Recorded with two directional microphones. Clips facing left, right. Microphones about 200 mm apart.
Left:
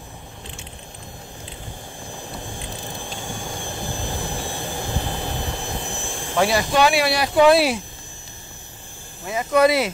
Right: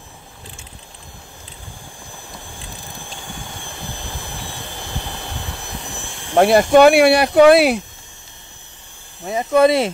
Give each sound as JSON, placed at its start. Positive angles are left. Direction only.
{"t": 6.3, "sound": "speech", "side_deg": -50}
{"t": 9.3, "sound": "speech", "side_deg": -25}